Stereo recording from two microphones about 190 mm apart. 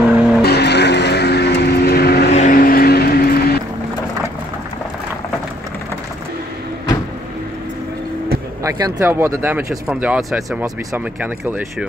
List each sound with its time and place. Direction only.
0.0 s vehicle: 5° right (ahead or behind)
0.4 s vehicle: 60° left (ahead or behind)
2.3 s vehicle: 45° left (ahead or behind)
8.6 s speech: 20° right (ahead or behind)